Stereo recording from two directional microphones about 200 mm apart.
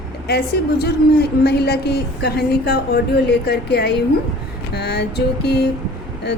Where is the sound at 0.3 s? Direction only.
55° left (ahead or behind).